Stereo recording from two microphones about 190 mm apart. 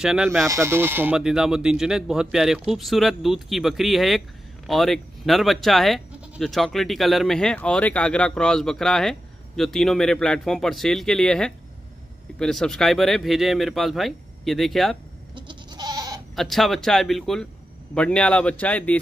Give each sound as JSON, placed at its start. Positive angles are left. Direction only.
{"t": 0.0, "sound": "speech", "side_deg": -5}
{"t": 15.3, "sound": "goat", "side_deg": -25}
{"t": 16.3, "sound": "speech", "side_deg": 0}